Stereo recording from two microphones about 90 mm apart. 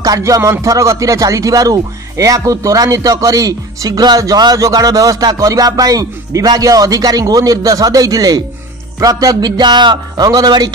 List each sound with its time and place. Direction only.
0.0 s speech: 40° right (ahead or behind)